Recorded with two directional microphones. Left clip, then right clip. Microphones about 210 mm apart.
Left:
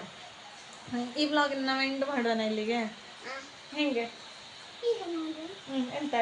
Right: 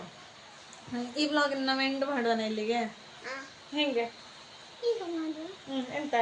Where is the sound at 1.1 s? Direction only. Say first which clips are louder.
Even; 5° left (ahead or behind).